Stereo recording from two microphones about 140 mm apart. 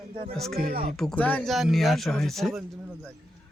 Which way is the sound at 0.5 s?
90° right.